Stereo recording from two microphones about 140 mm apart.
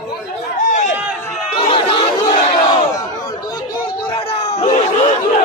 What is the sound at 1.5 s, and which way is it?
Battle cry, 40° left (ahead or behind).